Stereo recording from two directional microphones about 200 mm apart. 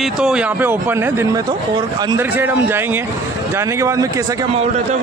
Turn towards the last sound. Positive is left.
turn(degrees=-15)  # may be behind; listen again after turning